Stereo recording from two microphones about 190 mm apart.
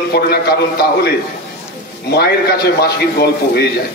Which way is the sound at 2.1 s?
60° left (ahead or behind).